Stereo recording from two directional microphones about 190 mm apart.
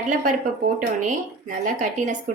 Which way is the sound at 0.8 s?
45° right (ahead or behind).